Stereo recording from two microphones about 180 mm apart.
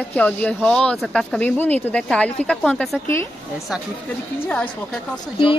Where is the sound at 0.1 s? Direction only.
10° left (ahead or behind).